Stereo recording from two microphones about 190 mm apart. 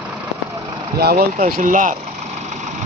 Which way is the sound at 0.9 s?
55° right (ahead or behind).